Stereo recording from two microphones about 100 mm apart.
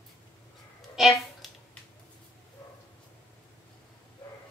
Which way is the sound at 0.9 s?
Centre (ahead or behind).